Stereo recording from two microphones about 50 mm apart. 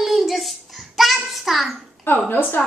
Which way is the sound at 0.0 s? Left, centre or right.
Centre.